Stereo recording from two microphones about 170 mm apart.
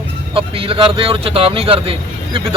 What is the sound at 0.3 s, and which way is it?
A man's voice, 30° right (ahead or behind).